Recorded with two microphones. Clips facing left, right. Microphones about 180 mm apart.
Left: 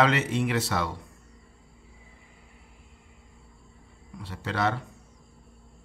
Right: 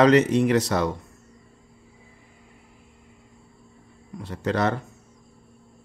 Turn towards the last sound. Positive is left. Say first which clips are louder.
# right 4 dB
turn(degrees=-45)  # may be behind; listen again after turning